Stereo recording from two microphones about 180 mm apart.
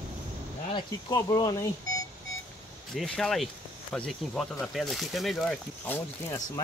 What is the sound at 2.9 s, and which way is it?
Speech, centre (ahead or behind).